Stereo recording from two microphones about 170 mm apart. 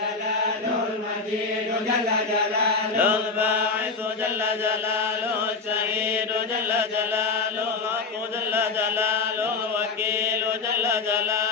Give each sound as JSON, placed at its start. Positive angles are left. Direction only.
{"t": 3.0, "sound": "mantra", "side_deg": -10}
{"t": 6.7, "sound": "mantra", "side_deg": -15}
{"t": 8.5, "sound": "chant", "side_deg": -15}
{"t": 10.8, "sound": "mantra", "side_deg": -15}